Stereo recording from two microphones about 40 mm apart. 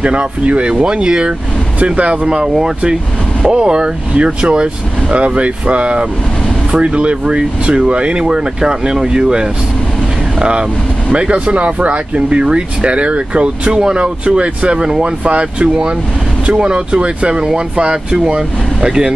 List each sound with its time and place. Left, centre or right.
0.0 s speech: right
11.1 s speech: right